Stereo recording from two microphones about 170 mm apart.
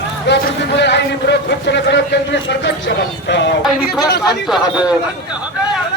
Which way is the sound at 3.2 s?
90° left.